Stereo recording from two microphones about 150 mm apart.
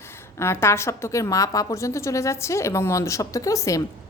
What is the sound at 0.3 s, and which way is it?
A woman's voice, 15° left (ahead or behind).